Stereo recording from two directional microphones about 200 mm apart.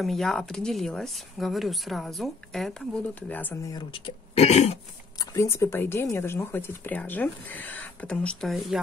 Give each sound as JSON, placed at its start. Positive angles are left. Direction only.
{"t": 0.0, "sound": "speech", "side_deg": 0}
{"t": 3.7, "sound": "speech", "side_deg": 25}
{"t": 5.2, "sound": "speech", "side_deg": 15}